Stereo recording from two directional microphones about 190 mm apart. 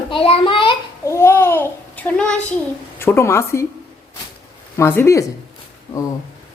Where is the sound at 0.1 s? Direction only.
30° left (ahead or behind).